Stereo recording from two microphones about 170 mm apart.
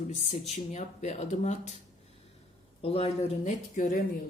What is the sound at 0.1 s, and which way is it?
Speech, 40° left (ahead or behind).